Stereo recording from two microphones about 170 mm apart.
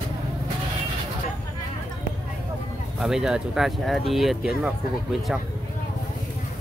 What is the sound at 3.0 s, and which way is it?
Speech, 5° right (ahead or behind).